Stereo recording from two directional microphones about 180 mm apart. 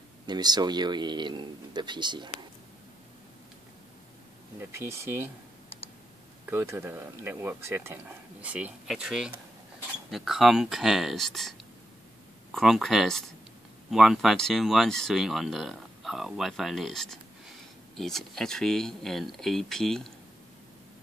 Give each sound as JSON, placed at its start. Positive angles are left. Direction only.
{"t": 0.3, "sound": "speech", "side_deg": -20}
{"t": 4.6, "sound": "speech", "side_deg": -15}
{"t": 6.5, "sound": "speech", "side_deg": -15}
{"t": 12.5, "sound": "speech", "side_deg": 0}